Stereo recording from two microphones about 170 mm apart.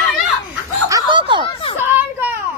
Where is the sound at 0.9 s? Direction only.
30° right (ahead or behind).